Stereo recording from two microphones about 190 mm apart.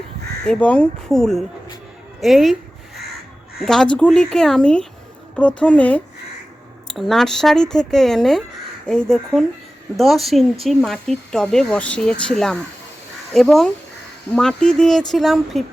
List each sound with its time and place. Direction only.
0.4 s speech: 5° left (ahead or behind)
2.2 s a sound: centre (ahead or behind)
3.6 s speech: 5° left (ahead or behind)